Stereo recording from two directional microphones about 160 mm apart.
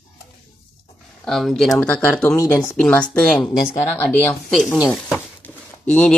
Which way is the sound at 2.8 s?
5° left (ahead or behind).